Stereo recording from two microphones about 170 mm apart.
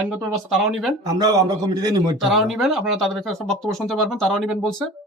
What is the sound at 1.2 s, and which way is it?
Speech, 20° right (ahead or behind).